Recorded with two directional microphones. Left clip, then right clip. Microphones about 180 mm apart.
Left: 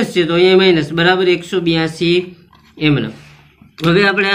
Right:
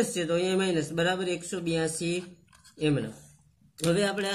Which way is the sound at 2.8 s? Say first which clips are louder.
Left 12 dB; 35° right (ahead or behind).